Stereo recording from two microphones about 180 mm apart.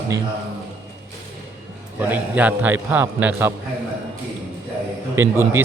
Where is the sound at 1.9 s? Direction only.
10° right (ahead or behind).